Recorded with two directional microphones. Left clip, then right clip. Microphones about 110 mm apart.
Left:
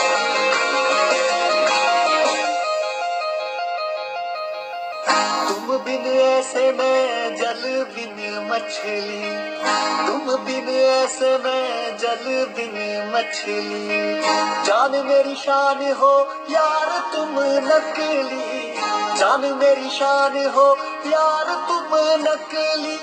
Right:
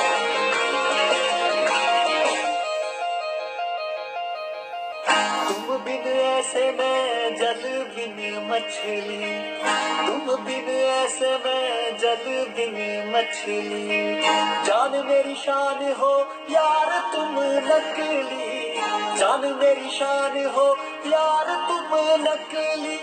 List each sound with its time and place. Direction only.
0.0 s music: 25° left (ahead or behind)
5.0 s music: 30° left (ahead or behind)
9.9 s music: 30° left (ahead or behind)
13.2 s music: 30° left (ahead or behind)